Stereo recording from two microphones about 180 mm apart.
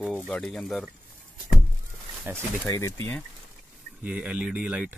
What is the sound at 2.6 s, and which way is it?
Speech, 15° left (ahead or behind).